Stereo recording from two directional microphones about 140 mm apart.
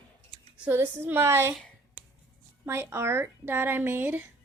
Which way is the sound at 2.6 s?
20° right (ahead or behind).